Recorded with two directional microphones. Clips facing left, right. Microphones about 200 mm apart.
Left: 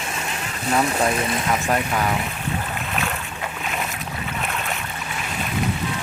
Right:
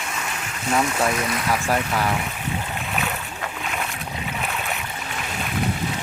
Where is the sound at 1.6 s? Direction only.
10° left (ahead or behind).